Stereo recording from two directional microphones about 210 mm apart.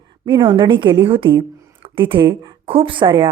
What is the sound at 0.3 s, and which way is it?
Speech, 25° right (ahead or behind).